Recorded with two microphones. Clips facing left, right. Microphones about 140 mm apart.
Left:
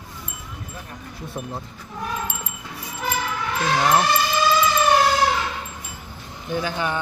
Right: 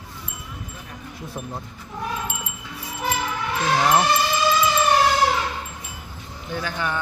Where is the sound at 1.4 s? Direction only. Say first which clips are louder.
Left 2 dB; centre (ahead or behind).